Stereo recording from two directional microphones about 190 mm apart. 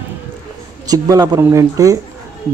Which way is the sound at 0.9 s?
20° right (ahead or behind).